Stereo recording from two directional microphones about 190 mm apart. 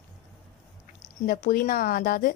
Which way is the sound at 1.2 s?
50° left (ahead or behind).